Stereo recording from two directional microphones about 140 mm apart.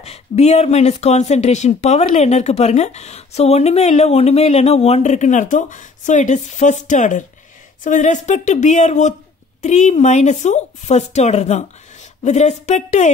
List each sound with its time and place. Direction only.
0.0 s a woman's voice: 50° left (ahead or behind)